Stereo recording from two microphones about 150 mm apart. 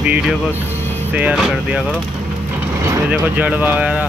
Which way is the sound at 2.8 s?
10° right (ahead or behind).